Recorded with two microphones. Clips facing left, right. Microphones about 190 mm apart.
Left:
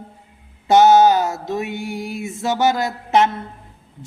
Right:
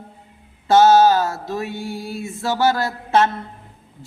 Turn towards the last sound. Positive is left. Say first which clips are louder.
# left 1 dB
turn(degrees=15)  # may be behind; listen again after turning